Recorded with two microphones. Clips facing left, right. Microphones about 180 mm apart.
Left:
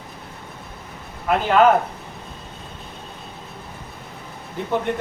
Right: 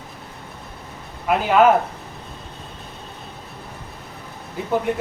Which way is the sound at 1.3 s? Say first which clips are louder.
Even; 5° right (ahead or behind).